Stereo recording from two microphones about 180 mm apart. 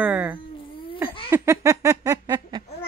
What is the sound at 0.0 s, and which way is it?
Cat, 10° right (ahead or behind).